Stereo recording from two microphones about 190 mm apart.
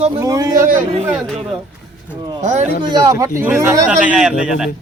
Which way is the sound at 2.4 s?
40° right (ahead or behind).